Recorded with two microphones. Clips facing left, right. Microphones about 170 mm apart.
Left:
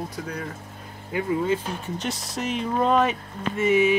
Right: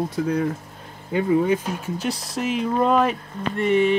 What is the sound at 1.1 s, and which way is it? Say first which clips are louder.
Speech: right 5 dB; 15° right (ahead or behind).